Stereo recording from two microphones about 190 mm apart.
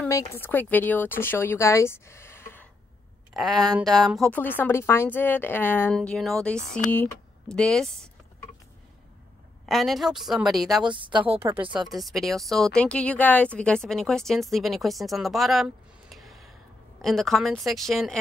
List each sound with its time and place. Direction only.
0.2 s a woman's voice: 10° left (ahead or behind)
3.3 s a woman's voice: centre (ahead or behind)
9.7 s a woman's voice: centre (ahead or behind)
10.9 s a woman's voice: 25° right (ahead or behind)
11.3 s a woman's voice: 15° right (ahead or behind)
11.6 s a woman's voice: 25° right (ahead or behind)
11.9 s a woman's voice: centre (ahead or behind)